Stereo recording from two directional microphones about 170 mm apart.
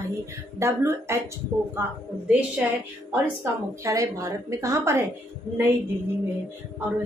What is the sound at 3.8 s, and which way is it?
Speech, 20° right (ahead or behind).